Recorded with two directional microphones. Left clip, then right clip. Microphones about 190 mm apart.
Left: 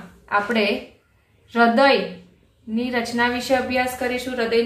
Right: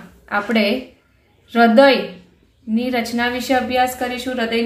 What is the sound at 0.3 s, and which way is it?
A woman's voice, 30° right (ahead or behind).